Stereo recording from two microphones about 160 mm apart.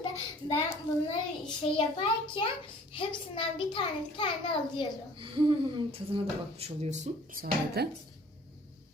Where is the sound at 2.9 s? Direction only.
30° left (ahead or behind).